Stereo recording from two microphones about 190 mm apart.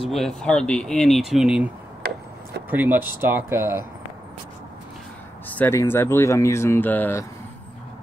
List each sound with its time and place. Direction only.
0.4 s speech: 5° left (ahead or behind)
2.0 s a sound: 55° right (ahead or behind)
2.7 s speech: 10° right (ahead or behind)
5.5 s speech: 10° left (ahead or behind)